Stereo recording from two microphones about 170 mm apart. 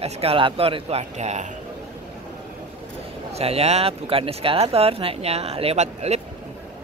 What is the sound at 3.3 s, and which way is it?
Speech, 35° right (ahead or behind).